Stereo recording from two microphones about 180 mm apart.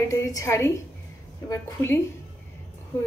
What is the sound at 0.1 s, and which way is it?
A woman's voice, 15° left (ahead or behind).